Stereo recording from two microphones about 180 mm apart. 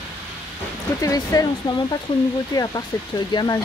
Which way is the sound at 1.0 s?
20° left (ahead or behind).